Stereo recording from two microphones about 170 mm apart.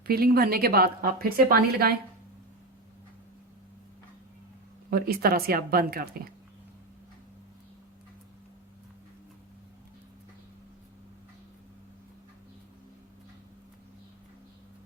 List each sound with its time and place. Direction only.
0.1 s a woman's voice: 60° right (ahead or behind)
4.9 s a woman's voice: 65° right (ahead or behind)